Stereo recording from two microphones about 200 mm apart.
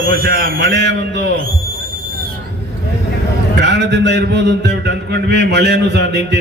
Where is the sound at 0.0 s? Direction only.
45° right (ahead or behind).